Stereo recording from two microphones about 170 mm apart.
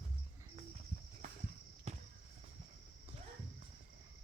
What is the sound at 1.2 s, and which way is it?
Walk, 45° right (ahead or behind).